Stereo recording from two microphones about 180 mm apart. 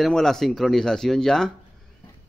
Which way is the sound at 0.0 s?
Centre (ahead or behind).